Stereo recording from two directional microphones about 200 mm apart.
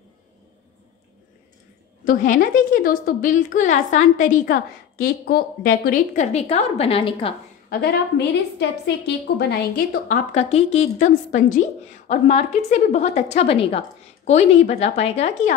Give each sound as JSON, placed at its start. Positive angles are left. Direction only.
{"t": 2.0, "sound": "a woman's voice", "side_deg": 40}
{"t": 6.3, "sound": "a woman's voice", "side_deg": 30}
{"t": 8.5, "sound": "a woman's voice", "side_deg": 55}
{"t": 10.0, "sound": "a woman's voice", "side_deg": 40}